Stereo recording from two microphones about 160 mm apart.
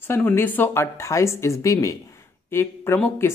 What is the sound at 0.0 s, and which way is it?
Speech, 15° left (ahead or behind).